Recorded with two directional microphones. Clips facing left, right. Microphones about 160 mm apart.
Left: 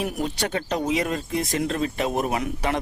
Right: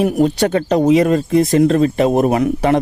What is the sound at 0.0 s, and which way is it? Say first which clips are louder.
Speech: right 12 dB; 50° right (ahead or behind).